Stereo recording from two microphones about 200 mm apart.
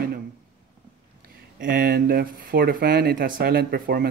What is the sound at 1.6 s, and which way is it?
Speech, 45° right (ahead or behind).